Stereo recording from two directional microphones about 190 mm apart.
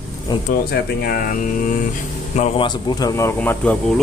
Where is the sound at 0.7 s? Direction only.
50° left (ahead or behind); by 4.0 s 5° left (ahead or behind).